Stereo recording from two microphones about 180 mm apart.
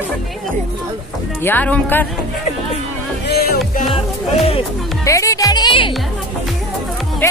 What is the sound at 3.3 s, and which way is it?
Music, 60° left (ahead or behind).